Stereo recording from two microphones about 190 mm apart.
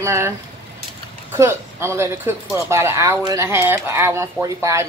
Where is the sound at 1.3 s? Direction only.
15° right (ahead or behind).